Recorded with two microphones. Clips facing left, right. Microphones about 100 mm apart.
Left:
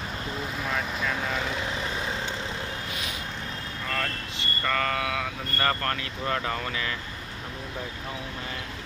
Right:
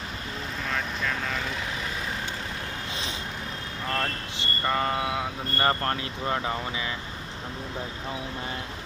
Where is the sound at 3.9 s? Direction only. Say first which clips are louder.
Right 2 dB; 25° right (ahead or behind).